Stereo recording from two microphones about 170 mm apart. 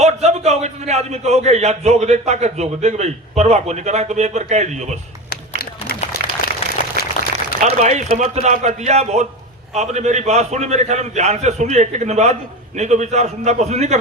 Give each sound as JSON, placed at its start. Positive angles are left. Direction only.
{"t": 0.0, "sound": "a man's voice", "side_deg": -40}
{"t": 5.3, "sound": "a sound", "side_deg": 65}
{"t": 6.2, "sound": "applause", "side_deg": -70}
{"t": 7.6, "sound": "a man's voice", "side_deg": -40}